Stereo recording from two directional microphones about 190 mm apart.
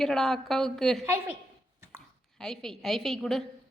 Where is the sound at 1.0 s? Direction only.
10° right (ahead or behind).